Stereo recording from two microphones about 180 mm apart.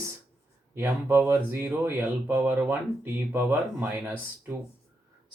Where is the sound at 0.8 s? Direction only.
10° right (ahead or behind).